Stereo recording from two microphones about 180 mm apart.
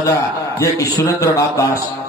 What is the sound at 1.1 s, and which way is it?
Speech, 15° left (ahead or behind).